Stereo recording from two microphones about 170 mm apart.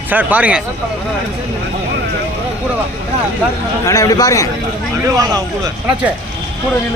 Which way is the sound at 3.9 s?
20° left (ahead or behind).